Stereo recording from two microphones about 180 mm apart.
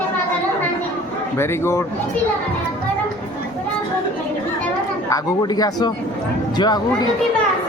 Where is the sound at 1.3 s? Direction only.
15° left (ahead or behind).